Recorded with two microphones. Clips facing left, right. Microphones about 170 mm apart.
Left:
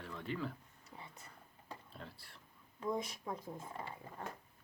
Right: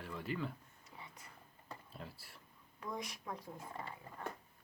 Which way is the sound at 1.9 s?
5° right (ahead or behind).